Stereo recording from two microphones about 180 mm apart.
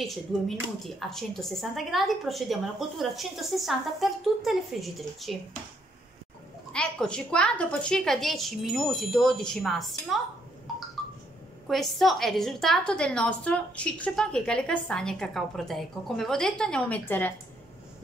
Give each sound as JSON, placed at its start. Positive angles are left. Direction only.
{"t": 0.0, "sound": "a woman's voice", "side_deg": 0}
{"t": 6.7, "sound": "a woman's voice", "side_deg": 5}
{"t": 11.6, "sound": "a woman's voice", "side_deg": 0}